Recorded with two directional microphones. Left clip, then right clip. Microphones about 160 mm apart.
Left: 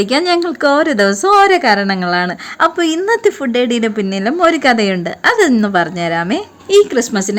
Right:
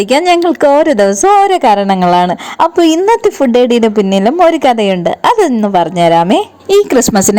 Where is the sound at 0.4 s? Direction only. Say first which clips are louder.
Right 5 dB; 30° right (ahead or behind).